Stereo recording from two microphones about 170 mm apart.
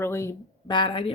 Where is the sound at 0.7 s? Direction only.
25° left (ahead or behind).